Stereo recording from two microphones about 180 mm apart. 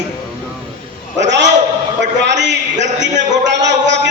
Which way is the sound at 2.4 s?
75° right (ahead or behind).